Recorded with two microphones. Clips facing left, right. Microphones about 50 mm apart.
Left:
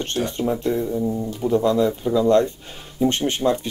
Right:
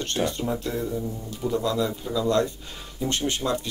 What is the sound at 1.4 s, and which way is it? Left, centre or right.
Speech, left.